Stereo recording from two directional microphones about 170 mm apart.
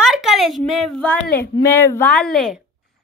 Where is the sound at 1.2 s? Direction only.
65° left (ahead or behind).